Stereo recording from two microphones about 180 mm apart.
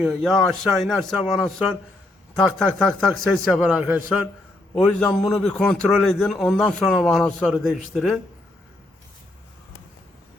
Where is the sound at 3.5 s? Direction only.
10° right (ahead or behind).